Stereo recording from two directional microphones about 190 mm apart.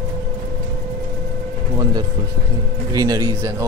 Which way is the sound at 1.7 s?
20° right (ahead or behind).